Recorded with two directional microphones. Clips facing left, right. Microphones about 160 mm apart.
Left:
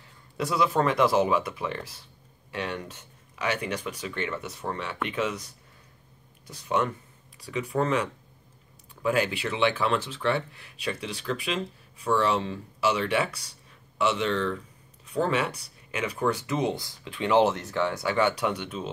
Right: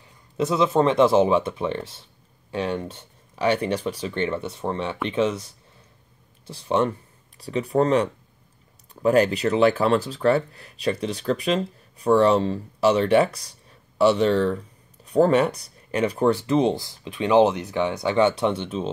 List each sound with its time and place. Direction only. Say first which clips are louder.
0.4 s speech: right 5 dB; 20° right (ahead or behind)